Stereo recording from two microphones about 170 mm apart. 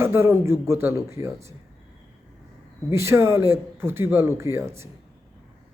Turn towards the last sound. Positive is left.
turn(degrees=-15)  # may be behind; listen again after turning